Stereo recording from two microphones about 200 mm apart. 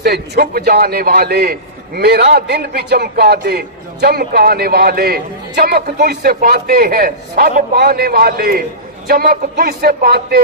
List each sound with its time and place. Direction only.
0.0 s a man's voice: 50° right (ahead or behind)